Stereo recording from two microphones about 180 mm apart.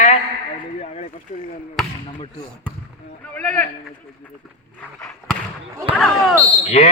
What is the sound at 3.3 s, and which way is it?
Speech, 10° left (ahead or behind).